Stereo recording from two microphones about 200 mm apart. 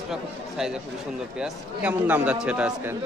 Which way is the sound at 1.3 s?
5° right (ahead or behind).